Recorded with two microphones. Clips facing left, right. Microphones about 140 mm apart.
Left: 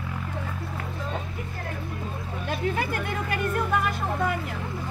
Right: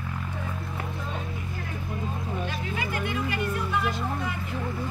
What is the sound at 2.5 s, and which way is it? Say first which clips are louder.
Music: left 4 dB; 50° left (ahead or behind).